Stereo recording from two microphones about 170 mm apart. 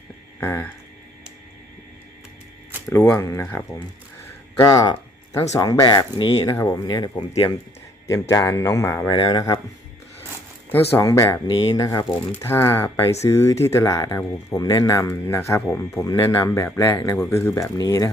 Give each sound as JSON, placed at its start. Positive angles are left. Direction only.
{"t": 0.3, "sound": "a sound", "side_deg": 10}
{"t": 2.9, "sound": "speech", "side_deg": 15}
{"t": 4.6, "sound": "speech", "side_deg": 20}
{"t": 10.9, "sound": "speech", "side_deg": 20}